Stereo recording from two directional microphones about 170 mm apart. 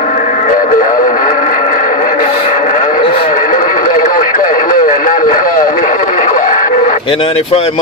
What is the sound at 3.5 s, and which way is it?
Radio, 50° left (ahead or behind).